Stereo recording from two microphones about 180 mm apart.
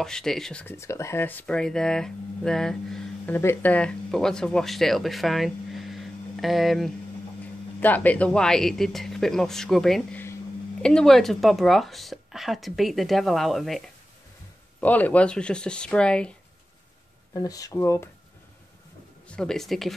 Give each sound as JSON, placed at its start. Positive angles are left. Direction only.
{"t": 0.0, "sound": "speech", "side_deg": 5}
{"t": 17.3, "sound": "speech", "side_deg": 20}
{"t": 19.2, "sound": "speech", "side_deg": 5}